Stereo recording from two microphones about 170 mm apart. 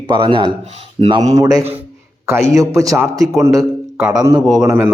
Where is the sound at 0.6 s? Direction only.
40° right (ahead or behind).